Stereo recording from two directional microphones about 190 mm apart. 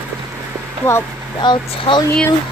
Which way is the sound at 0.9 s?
20° left (ahead or behind).